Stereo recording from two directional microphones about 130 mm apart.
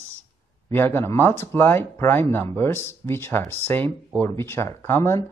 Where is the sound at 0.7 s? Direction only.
15° left (ahead or behind).